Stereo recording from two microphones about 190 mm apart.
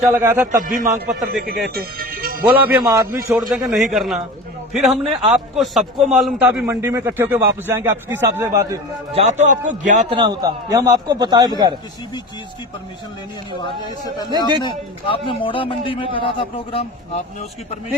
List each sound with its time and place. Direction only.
0.1 s a man's voice: 10° right (ahead or behind)
0.6 s a man's voice: 45° right (ahead or behind)
1.7 s music: 50° right (ahead or behind)
2.4 s a man's voice: 10° right (ahead or behind)
3.3 s a man's voice: 5° right (ahead or behind)
5.3 s a man's voice: centre (ahead or behind)
9.1 s a man's voice: 40° right (ahead or behind)
10.2 s a man's voice: 20° right (ahead or behind)
14.3 s a man's voice: 25° right (ahead or behind)
14.6 s a man's voice: 25° left (ahead or behind)